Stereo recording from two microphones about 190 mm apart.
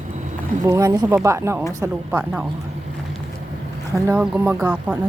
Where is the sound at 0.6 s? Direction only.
20° right (ahead or behind).